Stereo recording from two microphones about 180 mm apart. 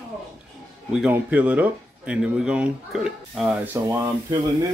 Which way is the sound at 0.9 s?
5° right (ahead or behind).